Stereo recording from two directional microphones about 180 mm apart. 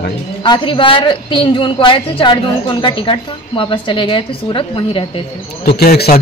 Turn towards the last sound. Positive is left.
turn(degrees=60)  # may be behind; listen again after turning